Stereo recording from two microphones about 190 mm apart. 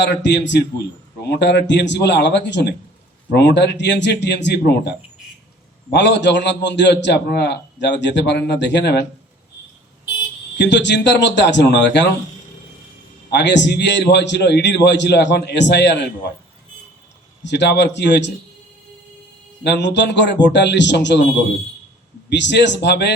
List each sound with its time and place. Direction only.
0.0 s a man's voice: 65° left (ahead or behind)
10.6 s a man's voice: 65° left (ahead or behind)
13.3 s a man's voice: 65° left (ahead or behind)
17.4 s a man's voice: 65° left (ahead or behind)
19.6 s a man's voice: 65° left (ahead or behind)
22.3 s a man's voice: 65° left (ahead or behind)